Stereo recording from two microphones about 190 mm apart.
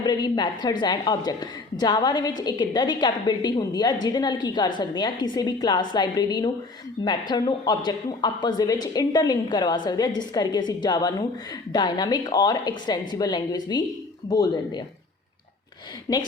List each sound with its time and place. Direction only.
0.0 s speech: 20° left (ahead or behind)
16.1 s a woman's voice: 20° left (ahead or behind)